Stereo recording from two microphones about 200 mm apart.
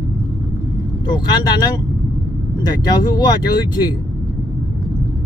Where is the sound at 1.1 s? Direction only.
20° left (ahead or behind).